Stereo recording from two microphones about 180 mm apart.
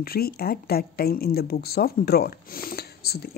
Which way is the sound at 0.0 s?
55° left (ahead or behind).